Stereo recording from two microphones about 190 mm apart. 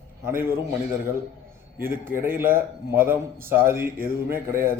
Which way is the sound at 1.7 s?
10° right (ahead or behind).